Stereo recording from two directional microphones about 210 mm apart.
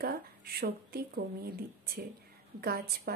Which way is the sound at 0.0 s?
45° right (ahead or behind).